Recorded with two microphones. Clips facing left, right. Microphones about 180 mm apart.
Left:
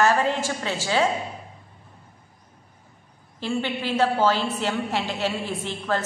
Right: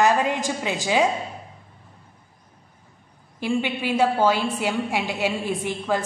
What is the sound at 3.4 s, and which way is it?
A woman's voice, 15° right (ahead or behind).